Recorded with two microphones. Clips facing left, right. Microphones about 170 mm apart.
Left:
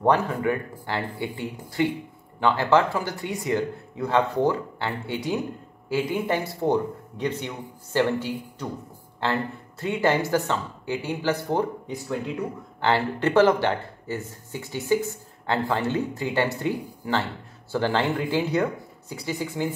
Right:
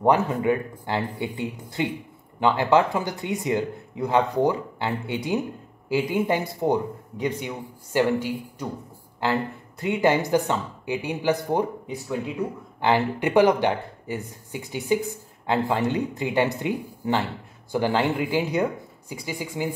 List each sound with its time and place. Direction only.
0.0 s a man's voice: 15° right (ahead or behind)
12.8 s a man's voice: 15° right (ahead or behind)